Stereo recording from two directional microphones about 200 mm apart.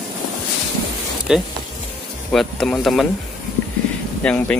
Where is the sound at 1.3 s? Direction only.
5° right (ahead or behind).